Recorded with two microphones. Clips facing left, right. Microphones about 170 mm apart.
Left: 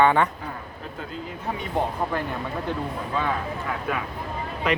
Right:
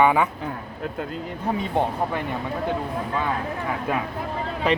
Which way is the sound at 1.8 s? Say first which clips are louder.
Right 2 dB; 25° right (ahead or behind).